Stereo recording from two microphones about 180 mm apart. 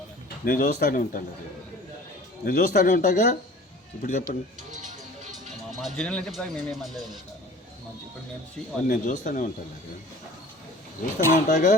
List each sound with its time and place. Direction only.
0.4 s speech: 50° left (ahead or behind)
2.4 s speech: 50° left (ahead or behind)
5.7 s speech: centre (ahead or behind)
8.9 s speech: 45° left (ahead or behind)
11.0 s speech: 50° left (ahead or behind)